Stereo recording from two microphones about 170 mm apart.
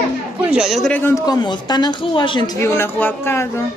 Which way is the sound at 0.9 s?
15° left (ahead or behind).